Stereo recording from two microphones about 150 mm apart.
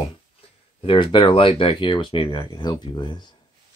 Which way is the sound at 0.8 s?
35° left (ahead or behind).